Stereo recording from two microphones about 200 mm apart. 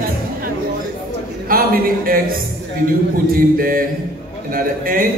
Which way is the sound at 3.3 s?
45° right (ahead or behind).